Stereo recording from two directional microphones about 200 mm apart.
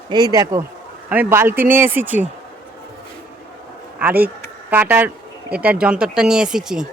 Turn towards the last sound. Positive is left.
turn(degrees=-5)  # may be behind; listen again after turning